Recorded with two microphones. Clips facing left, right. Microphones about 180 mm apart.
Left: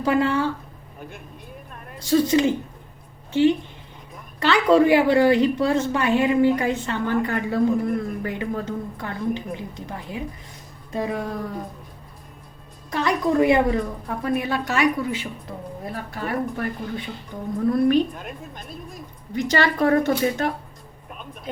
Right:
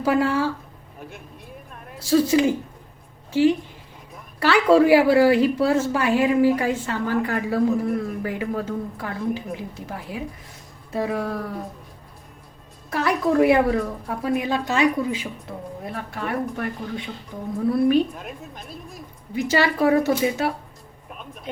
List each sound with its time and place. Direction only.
0.0 s a woman's voice: 5° right (ahead or behind)
4.1 s a woman's voice: 10° right (ahead or behind)
12.9 s a woman's voice: 5° right (ahead or behind)
15.4 s a woman's voice: centre (ahead or behind)
21.1 s a sound: centre (ahead or behind)